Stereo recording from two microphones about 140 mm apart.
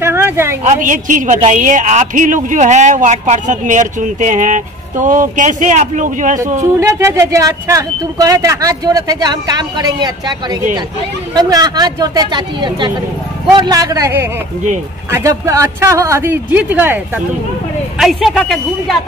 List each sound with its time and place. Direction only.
0.0 s a sound: 15° right (ahead or behind)
0.7 s a woman's voice: 70° right (ahead or behind)
6.6 s speech: 20° right (ahead or behind)
17.9 s speech: centre (ahead or behind)